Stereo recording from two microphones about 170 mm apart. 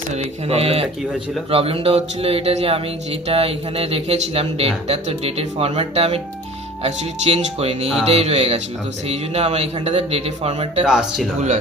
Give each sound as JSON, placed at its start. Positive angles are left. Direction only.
{"t": 0.1, "sound": "speech", "side_deg": -40}
{"t": 10.8, "sound": "speech", "side_deg": -5}